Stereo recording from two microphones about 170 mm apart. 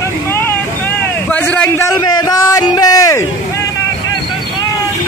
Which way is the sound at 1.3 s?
10° left (ahead or behind).